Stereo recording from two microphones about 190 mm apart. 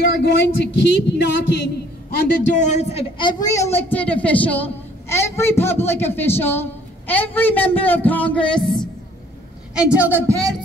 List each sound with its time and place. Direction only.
0.1 s speech: 65° left (ahead or behind)
2.1 s a woman's voice: 40° left (ahead or behind); by 8.8 s 5° left (ahead or behind)
9.8 s a woman's voice: 5° right (ahead or behind)